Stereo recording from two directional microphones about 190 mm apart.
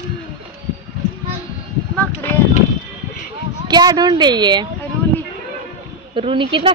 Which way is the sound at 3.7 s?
20° right (ahead or behind).